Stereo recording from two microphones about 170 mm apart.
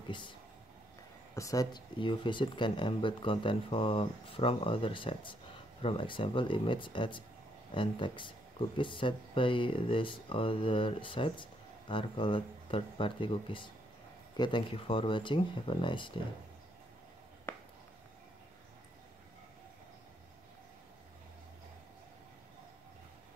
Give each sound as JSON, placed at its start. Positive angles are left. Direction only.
{"t": 1.3, "sound": "speech", "side_deg": 20}